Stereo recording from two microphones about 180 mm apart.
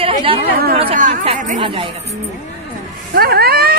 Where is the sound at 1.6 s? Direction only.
30° right (ahead or behind).